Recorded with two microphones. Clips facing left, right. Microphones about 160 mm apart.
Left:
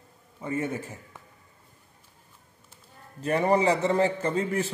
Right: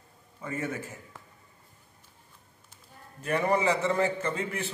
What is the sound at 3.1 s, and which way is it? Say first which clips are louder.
A man's voice: left 3 dB; 30° left (ahead or behind).